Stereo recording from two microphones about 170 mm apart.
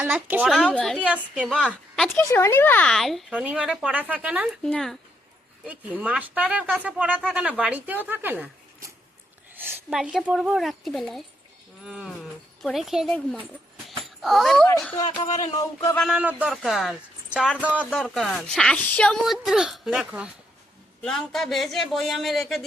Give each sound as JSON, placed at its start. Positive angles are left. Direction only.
{"t": 0.0, "sound": "speech", "side_deg": -10}
{"t": 2.1, "sound": "speech", "side_deg": 15}
{"t": 4.6, "sound": "speech", "side_deg": 0}
{"t": 5.6, "sound": "speech", "side_deg": -10}
{"t": 9.6, "sound": "speech", "side_deg": -5}
{"t": 15.2, "sound": "speech", "side_deg": 40}
{"t": 15.5, "sound": "a sound", "side_deg": 20}
{"t": 16.0, "sound": "speech", "side_deg": -5}